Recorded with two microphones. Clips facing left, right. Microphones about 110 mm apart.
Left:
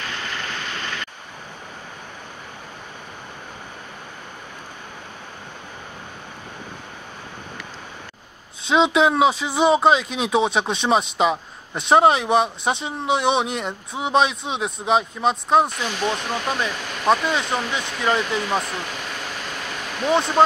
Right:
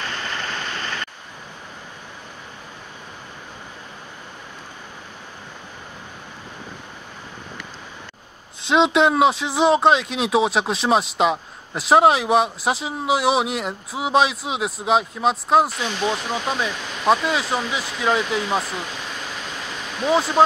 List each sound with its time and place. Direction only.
0.1 s waterfall: 40° right (ahead or behind)
8.6 s speech: centre (ahead or behind)
20.0 s speech: centre (ahead or behind)